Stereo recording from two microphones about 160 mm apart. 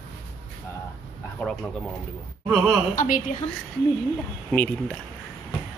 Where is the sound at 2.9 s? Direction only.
55° left (ahead or behind).